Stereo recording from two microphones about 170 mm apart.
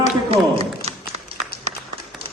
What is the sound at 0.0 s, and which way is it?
Tap, 35° right (ahead or behind).